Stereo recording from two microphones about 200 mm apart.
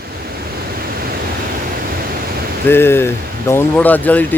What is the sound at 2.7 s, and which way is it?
Speech, 10° left (ahead or behind).